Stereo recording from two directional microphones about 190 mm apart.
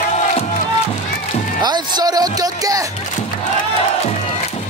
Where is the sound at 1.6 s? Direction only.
20° right (ahead or behind).